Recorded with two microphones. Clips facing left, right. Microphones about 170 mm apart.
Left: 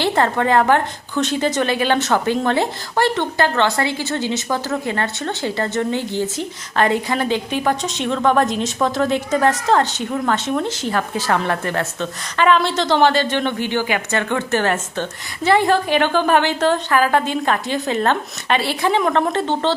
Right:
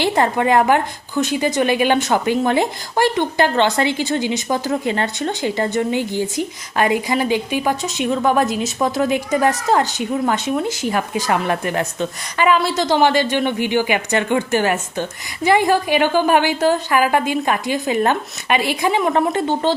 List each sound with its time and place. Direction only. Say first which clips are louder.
0.0 s a woman's voice: right 1 dB; 15° right (ahead or behind)